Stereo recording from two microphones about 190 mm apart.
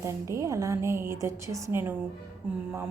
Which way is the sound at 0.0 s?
15° right (ahead or behind).